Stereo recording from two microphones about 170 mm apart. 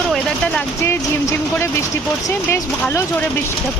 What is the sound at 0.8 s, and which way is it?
Speech, 15° left (ahead or behind).